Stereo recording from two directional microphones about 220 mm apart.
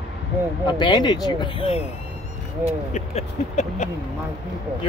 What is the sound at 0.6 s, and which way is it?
Speech, 20° left (ahead or behind).